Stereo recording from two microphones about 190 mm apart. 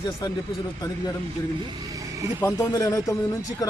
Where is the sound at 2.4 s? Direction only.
15° left (ahead or behind).